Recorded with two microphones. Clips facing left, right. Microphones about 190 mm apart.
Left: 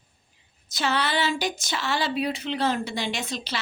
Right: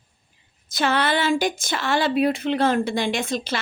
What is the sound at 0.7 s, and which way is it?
A woman's voice, 55° right (ahead or behind).